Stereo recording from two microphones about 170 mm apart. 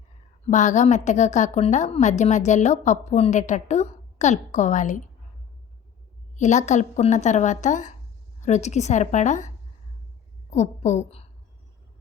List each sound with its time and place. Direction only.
0.4 s a woman's voice: 45° left (ahead or behind)
6.3 s a woman's voice: 45° left (ahead or behind)
10.5 s a woman's voice: 40° left (ahead or behind)